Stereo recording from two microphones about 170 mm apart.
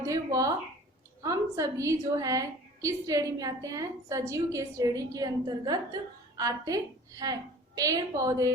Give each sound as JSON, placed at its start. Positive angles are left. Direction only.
{"t": 0.0, "sound": "a woman's voice", "side_deg": -20}